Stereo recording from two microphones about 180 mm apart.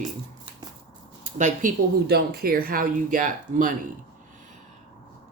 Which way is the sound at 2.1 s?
60° right (ahead or behind).